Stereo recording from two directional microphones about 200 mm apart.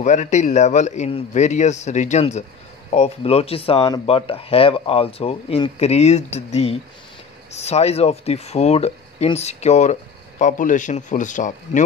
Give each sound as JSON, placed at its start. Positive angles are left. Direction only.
{"t": 0.0, "sound": "speech", "side_deg": 35}